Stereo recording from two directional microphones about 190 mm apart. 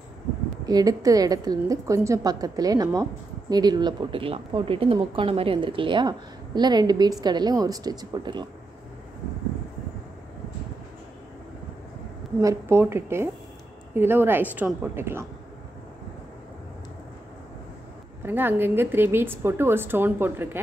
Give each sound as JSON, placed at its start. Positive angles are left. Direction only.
{"t": 0.7, "sound": "a woman's voice", "side_deg": -20}
{"t": 12.4, "sound": "a woman's voice", "side_deg": -15}
{"t": 18.2, "sound": "a woman's voice", "side_deg": -10}